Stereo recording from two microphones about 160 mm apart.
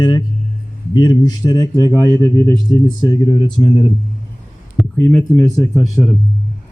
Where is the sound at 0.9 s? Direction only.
25° left (ahead or behind).